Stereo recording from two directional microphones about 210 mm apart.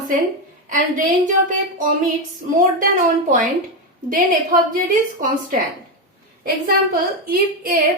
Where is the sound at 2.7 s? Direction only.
35° right (ahead or behind).